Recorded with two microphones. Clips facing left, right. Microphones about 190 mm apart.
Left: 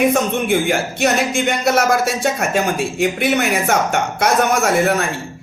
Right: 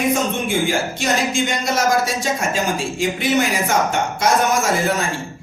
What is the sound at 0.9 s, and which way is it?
A man's voice, 60° left (ahead or behind).